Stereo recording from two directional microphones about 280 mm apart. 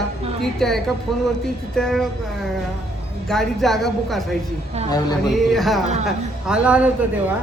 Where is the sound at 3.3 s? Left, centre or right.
Centre.